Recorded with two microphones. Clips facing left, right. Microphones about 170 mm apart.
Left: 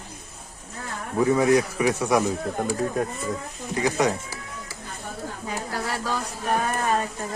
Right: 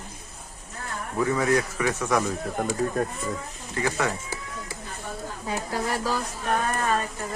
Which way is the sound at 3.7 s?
15° left (ahead or behind).